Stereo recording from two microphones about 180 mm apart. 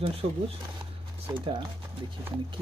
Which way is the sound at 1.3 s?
30° right (ahead or behind).